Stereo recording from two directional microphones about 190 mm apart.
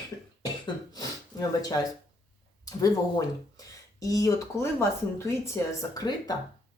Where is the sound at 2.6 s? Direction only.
20° left (ahead or behind).